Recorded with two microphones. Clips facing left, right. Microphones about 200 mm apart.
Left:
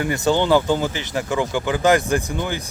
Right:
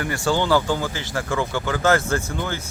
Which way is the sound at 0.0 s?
20° left (ahead or behind).